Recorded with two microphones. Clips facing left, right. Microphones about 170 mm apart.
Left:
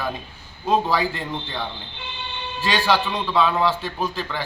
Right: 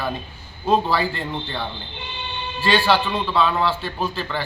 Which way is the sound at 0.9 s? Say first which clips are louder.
Even; 15° left (ahead or behind).